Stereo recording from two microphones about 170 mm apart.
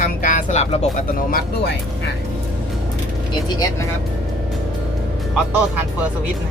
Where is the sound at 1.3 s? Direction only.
75° left (ahead or behind).